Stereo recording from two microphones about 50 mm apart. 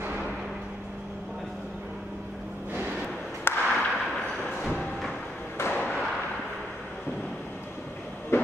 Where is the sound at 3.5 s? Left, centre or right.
Left.